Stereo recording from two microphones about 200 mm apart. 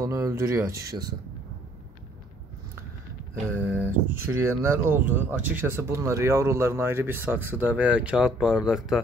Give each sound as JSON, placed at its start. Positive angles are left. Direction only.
{"t": 0.0, "sound": "speech", "side_deg": -15}
{"t": 3.6, "sound": "speech", "side_deg": -10}